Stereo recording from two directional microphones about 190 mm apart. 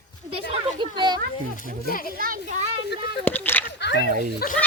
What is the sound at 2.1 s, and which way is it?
Children playing, 45° right (ahead or behind).